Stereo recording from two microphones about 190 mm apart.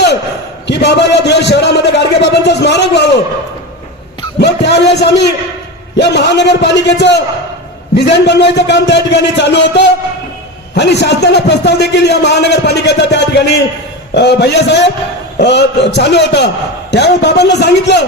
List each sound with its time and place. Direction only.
0.7 s a man's voice: 65° left (ahead or behind)
4.4 s a man's voice: 65° left (ahead or behind)